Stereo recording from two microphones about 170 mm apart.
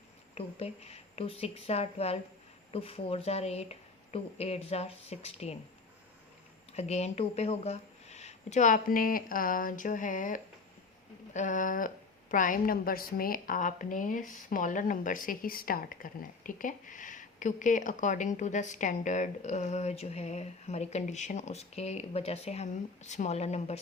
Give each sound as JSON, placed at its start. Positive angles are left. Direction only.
{"t": 0.3, "sound": "speech", "side_deg": 35}
{"t": 6.7, "sound": "a woman's voice", "side_deg": 40}